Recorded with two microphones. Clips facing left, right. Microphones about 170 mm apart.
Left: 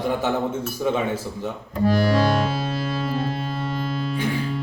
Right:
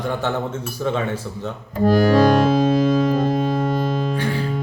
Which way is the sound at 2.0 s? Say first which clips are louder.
Right 8 dB; 50° right (ahead or behind).